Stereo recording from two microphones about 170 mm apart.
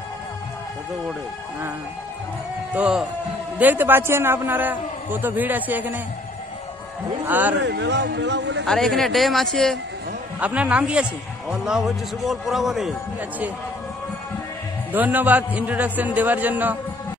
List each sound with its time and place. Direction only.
2.7 s a man's voice: 5° right (ahead or behind)
7.2 s a man's voice: 10° right (ahead or behind)
7.6 s speech: 90° right
8.6 s a man's voice: 5° left (ahead or behind)
14.9 s a man's voice: 10° right (ahead or behind)